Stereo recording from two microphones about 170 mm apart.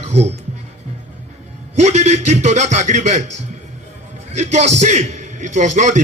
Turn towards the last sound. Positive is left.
turn(degrees=-45)  # may be behind; listen again after turning